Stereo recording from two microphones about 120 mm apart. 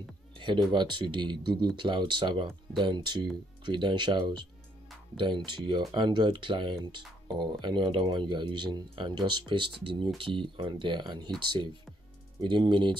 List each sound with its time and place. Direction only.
0.7 s speech: 40° right (ahead or behind)